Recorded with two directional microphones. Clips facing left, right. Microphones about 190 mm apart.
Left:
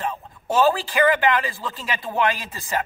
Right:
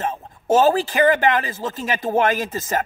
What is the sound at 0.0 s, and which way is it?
A man's voice, 45° right (ahead or behind).